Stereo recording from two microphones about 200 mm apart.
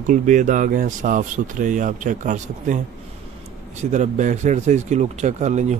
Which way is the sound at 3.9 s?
40° right (ahead or behind).